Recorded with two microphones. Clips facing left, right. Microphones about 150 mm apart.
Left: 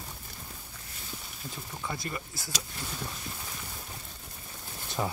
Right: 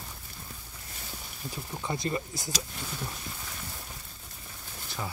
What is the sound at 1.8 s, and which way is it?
Speech, 20° right (ahead or behind).